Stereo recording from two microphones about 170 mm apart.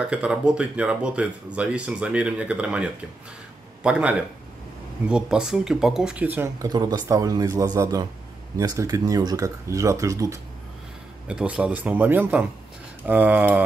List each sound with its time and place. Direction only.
0.1 s speech: 5° right (ahead or behind)
6.7 s speech: 25° right (ahead or behind)
11.2 s speech: 5° right (ahead or behind)